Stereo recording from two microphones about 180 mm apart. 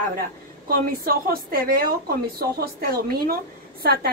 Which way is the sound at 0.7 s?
55° right (ahead or behind).